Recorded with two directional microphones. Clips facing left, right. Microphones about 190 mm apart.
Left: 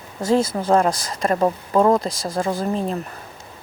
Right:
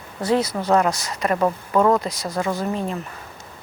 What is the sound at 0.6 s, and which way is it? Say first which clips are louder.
Speech: left 1 dB; 30° left (ahead or behind).